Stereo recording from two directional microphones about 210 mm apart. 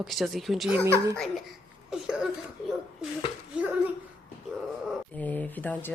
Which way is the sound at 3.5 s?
5° right (ahead or behind).